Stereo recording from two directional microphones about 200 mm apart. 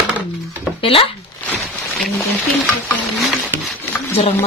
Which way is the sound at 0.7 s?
25° left (ahead or behind).